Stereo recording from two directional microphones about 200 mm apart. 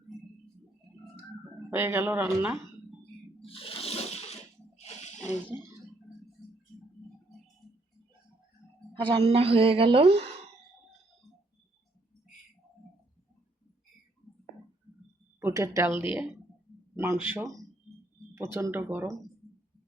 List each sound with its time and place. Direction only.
1.7 s speech: 10° right (ahead or behind)
3.4 s toilet flush: 25° left (ahead or behind)
4.8 s a sound: 35° left (ahead or behind)
5.5 s a sound: 10° right (ahead or behind)
9.0 s a woman's voice: 25° right (ahead or behind)
15.4 s speech: 15° right (ahead or behind)